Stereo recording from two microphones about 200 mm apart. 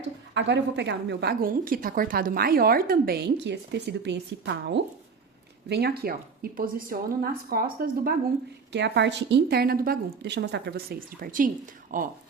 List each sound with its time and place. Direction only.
0.3 s a woman's voice: 60° right (ahead or behind)
8.7 s a woman's voice: 60° right (ahead or behind); by 12.0 s 45° right (ahead or behind)